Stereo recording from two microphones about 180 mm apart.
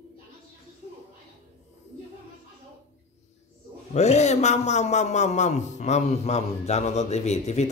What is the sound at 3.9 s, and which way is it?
A man's voice, 40° left (ahead or behind).